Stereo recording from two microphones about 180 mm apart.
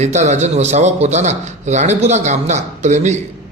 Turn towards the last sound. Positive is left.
turn(degrees=-40)  # may be behind; listen again after turning